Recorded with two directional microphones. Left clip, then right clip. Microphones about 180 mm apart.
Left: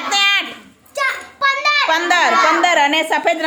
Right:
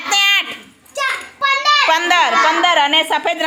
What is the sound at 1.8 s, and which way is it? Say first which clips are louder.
A woman's voice: right 1 dB; 5° right (ahead or behind).